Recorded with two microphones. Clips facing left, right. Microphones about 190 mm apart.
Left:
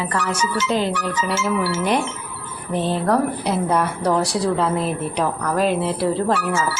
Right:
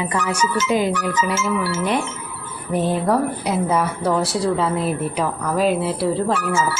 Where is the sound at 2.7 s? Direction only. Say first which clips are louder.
Right 1 dB; 10° right (ahead or behind).